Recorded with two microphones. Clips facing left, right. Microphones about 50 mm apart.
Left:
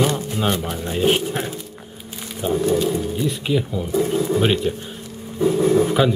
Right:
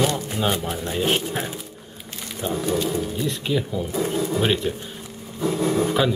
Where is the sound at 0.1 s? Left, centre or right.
Centre.